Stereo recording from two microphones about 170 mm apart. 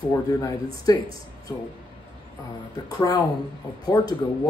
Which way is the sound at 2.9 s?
20° left (ahead or behind).